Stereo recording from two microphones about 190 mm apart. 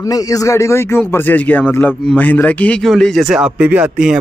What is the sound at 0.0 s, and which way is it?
Speech, 20° left (ahead or behind).